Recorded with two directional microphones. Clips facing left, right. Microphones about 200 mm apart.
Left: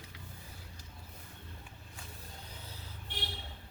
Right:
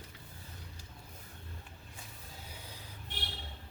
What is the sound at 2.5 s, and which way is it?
Vehicle, 15° right (ahead or behind).